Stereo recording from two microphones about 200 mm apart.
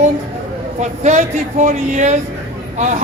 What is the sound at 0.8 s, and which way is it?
Speech, 35° right (ahead or behind).